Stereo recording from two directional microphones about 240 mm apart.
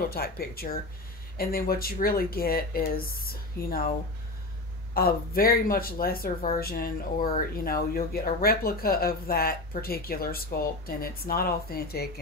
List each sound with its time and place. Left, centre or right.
0.1 s speech: left
4.9 s speech: left